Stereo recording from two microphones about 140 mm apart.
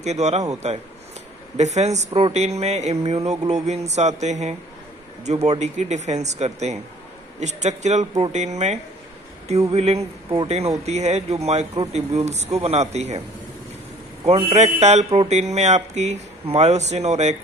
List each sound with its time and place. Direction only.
0.0 s a man's voice: 50° right (ahead or behind)
8.0 s speech: 30° right (ahead or behind)
8.3 s a man's voice: 55° right (ahead or behind)
14.2 s speech: 50° right (ahead or behind)